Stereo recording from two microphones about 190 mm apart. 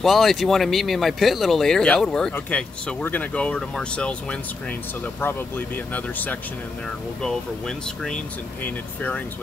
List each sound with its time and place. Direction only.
0.0 s speech: centre (ahead or behind)